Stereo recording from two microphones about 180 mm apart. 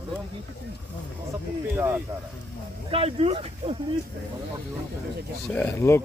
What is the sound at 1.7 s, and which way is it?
Speech, 10° right (ahead or behind).